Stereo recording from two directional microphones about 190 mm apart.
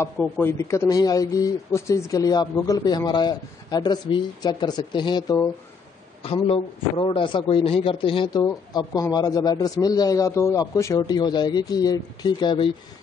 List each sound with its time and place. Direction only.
0.0 s a man's voice: 10° left (ahead or behind)